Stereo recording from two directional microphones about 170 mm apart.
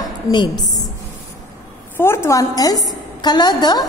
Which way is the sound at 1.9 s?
15° left (ahead or behind).